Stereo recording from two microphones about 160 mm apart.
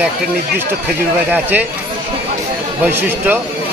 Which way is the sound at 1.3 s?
10° right (ahead or behind).